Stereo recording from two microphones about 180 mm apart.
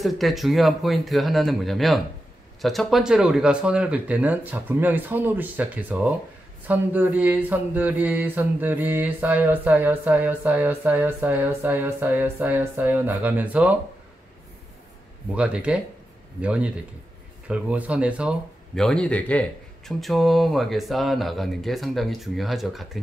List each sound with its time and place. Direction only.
0.0 s speech: centre (ahead or behind)
2.6 s mantra: centre (ahead or behind)
15.3 s mantra: 5° right (ahead or behind)
18.8 s a man's voice: 5° left (ahead or behind)